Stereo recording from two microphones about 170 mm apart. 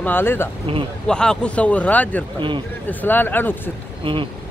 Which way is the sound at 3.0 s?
10° left (ahead or behind).